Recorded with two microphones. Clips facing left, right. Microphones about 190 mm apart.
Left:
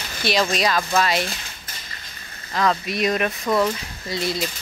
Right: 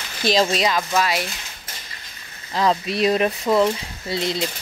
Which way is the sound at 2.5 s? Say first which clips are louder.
Right 2 dB; 25° right (ahead or behind).